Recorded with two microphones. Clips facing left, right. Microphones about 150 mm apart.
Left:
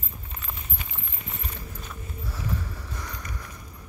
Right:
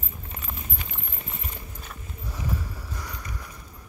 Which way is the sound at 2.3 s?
15° right (ahead or behind).